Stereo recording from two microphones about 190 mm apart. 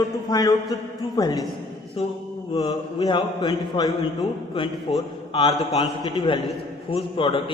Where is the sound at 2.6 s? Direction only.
25° left (ahead or behind).